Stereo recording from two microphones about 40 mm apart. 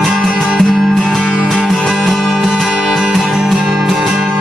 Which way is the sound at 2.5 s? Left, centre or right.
Centre.